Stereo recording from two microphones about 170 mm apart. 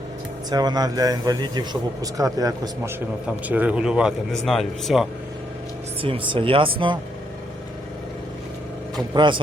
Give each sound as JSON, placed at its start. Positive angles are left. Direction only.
{"t": 0.5, "sound": "speech", "side_deg": -25}
{"t": 3.4, "sound": "speech", "side_deg": -10}
{"t": 6.0, "sound": "speech", "side_deg": -30}
{"t": 9.1, "sound": "speech", "side_deg": -25}